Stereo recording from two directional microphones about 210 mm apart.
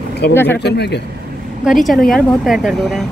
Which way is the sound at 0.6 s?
50° left (ahead or behind).